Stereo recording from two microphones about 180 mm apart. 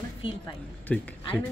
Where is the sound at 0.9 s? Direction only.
5° left (ahead or behind).